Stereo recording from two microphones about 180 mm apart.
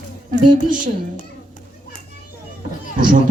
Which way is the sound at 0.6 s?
45° right (ahead or behind).